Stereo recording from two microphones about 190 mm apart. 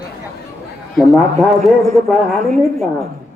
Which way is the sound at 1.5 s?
Centre (ahead or behind).